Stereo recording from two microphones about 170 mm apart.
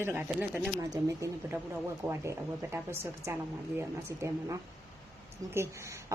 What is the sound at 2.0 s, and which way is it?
Speech, 15° right (ahead or behind).